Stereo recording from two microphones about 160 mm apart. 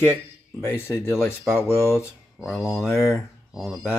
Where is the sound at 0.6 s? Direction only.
15° left (ahead or behind).